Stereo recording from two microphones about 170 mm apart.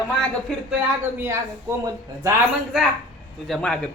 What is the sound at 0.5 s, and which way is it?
Speech, centre (ahead or behind).